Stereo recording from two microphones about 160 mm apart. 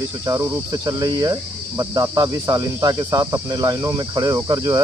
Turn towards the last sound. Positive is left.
turn(degrees=-25)  # may be behind; listen again after turning